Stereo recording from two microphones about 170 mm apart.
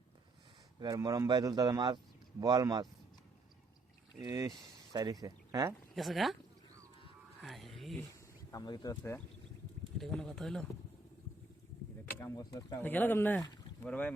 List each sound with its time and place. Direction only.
0.8 s a man's voice: 20° right (ahead or behind)
4.2 s a man's voice: 25° right (ahead or behind)
5.9 s speech: centre (ahead or behind)
7.4 s a sound: centre (ahead or behind)
8.4 s speech: 25° left (ahead or behind)
10.0 s speech: centre (ahead or behind)
12.0 s speech: 20° left (ahead or behind)